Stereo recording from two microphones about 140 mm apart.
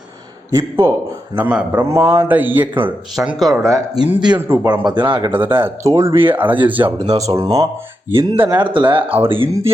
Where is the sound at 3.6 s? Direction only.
20° right (ahead or behind).